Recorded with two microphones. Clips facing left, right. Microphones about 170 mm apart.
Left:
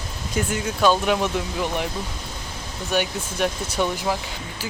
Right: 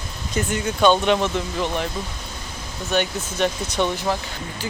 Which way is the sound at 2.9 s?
10° left (ahead or behind).